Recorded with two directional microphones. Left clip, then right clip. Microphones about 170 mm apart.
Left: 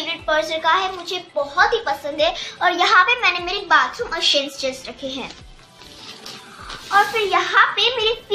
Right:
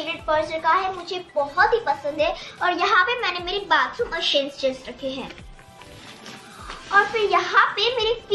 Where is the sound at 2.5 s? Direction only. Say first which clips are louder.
Left 4 dB; 15° left (ahead or behind).